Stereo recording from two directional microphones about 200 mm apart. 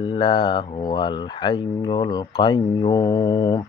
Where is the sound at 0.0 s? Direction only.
25° left (ahead or behind).